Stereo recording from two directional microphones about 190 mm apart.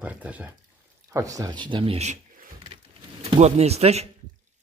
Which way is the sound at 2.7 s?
30° right (ahead or behind).